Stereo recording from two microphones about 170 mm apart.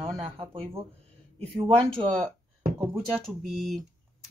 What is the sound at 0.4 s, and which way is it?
Speech, 30° right (ahead or behind).